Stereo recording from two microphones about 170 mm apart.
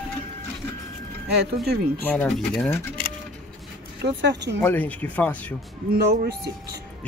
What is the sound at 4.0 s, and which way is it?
Speech, 90° right.